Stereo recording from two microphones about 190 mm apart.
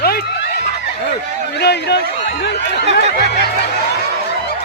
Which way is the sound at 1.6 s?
60° left (ahead or behind).